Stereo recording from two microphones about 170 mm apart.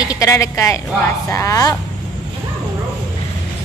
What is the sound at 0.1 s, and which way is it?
Speech, 20° left (ahead or behind).